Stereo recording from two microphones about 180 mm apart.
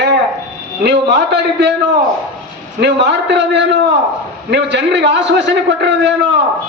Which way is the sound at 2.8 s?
70° right (ahead or behind).